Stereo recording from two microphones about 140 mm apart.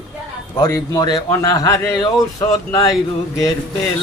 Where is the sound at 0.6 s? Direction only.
25° left (ahead or behind).